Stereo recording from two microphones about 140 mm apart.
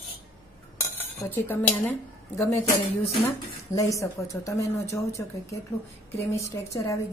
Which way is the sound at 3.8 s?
20° left (ahead or behind).